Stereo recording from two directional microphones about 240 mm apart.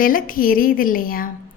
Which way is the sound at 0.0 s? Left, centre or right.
Left.